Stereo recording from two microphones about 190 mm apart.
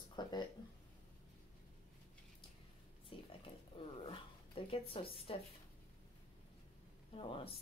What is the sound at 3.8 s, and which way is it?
Speech, 30° left (ahead or behind).